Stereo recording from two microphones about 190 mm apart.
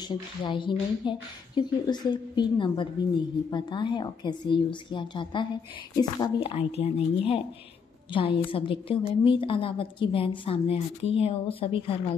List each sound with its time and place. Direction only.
0.1 s a woman's voice: 25° left (ahead or behind)